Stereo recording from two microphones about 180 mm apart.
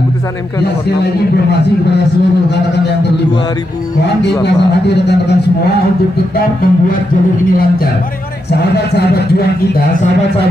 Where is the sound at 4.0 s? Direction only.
70° left (ahead or behind).